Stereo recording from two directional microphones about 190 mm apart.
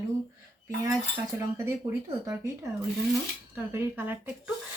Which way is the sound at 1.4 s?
15° right (ahead or behind).